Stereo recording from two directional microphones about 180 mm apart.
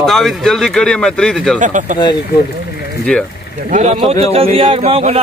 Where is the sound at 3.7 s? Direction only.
35° right (ahead or behind).